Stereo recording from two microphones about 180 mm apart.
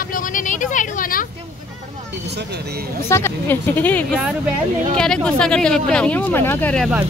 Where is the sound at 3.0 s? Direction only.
15° left (ahead or behind).